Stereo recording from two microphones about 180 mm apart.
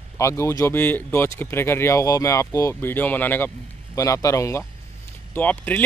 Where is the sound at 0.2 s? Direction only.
15° left (ahead or behind).